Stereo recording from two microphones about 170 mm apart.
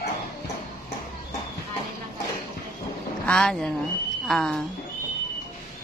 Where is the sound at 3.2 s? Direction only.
5° left (ahead or behind).